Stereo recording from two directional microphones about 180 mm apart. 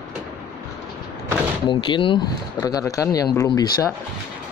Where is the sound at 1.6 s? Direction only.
25° left (ahead or behind).